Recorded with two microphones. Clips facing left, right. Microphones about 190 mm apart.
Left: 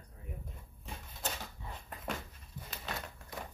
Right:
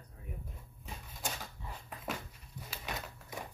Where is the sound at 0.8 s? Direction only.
10° right (ahead or behind).